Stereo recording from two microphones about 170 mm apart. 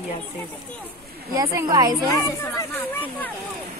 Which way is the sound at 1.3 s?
20° right (ahead or behind).